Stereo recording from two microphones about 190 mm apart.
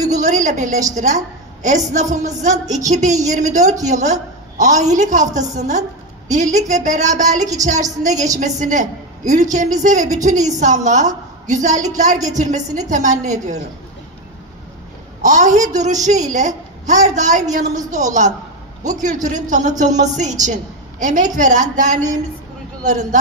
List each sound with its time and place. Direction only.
0.1 s a woman's voice: 40° right (ahead or behind)
15.2 s a woman's voice: 40° right (ahead or behind)